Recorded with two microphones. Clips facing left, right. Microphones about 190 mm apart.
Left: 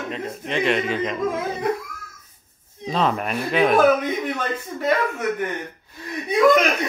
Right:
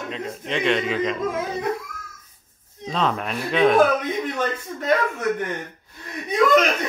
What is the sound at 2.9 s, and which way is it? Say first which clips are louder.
Speech: left 2 dB; 5° left (ahead or behind).